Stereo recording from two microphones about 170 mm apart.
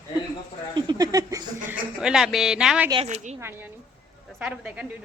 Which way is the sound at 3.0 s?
40° right (ahead or behind).